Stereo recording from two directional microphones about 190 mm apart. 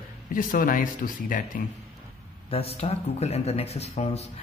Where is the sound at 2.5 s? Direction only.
30° left (ahead or behind).